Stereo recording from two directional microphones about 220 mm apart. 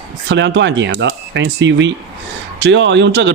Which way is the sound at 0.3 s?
55° right (ahead or behind).